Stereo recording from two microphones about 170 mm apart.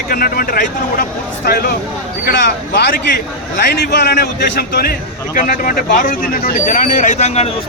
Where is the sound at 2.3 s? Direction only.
80° left.